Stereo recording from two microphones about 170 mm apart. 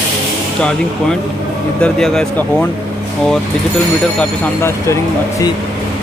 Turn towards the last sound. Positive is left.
turn(degrees=20)  # may be behind; listen again after turning